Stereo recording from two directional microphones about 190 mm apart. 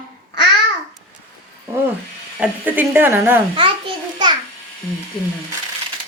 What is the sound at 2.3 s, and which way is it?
Speech, 10° right (ahead or behind).